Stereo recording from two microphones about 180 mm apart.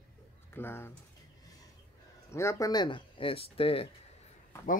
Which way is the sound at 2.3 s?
15° left (ahead or behind).